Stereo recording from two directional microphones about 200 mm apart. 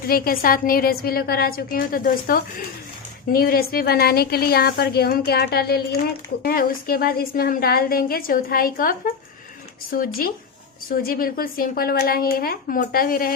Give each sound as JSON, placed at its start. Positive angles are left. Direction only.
{"t": 0.1, "sound": "a woman's voice", "side_deg": 45}